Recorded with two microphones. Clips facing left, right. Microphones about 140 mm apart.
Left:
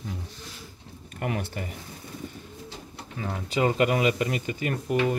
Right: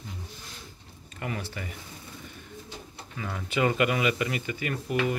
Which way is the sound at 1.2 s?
50° left (ahead or behind).